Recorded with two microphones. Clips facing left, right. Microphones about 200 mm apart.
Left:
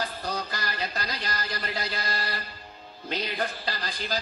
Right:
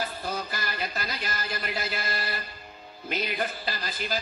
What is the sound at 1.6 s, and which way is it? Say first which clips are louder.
Music: even; 5° right (ahead or behind).